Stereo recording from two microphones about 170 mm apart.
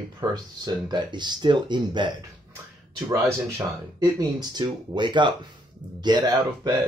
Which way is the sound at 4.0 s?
25° right (ahead or behind).